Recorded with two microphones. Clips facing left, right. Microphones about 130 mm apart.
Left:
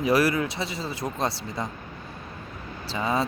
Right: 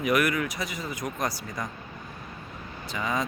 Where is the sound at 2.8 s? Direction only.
30° left (ahead or behind).